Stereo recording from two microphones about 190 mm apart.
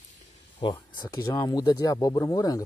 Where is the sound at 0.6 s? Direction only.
25° left (ahead or behind).